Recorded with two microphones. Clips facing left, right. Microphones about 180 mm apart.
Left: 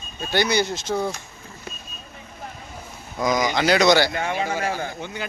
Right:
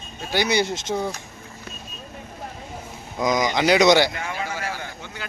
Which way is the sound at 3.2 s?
20° right (ahead or behind).